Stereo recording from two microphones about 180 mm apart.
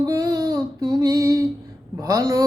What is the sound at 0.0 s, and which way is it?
Child singing, 20° right (ahead or behind).